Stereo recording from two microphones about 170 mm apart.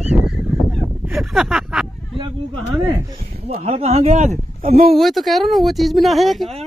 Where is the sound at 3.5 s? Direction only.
35° right (ahead or behind); by 4.9 s 55° right (ahead or behind).